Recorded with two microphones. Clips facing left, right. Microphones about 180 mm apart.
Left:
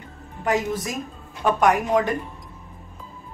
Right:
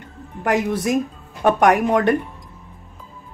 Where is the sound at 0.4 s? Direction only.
65° right (ahead or behind).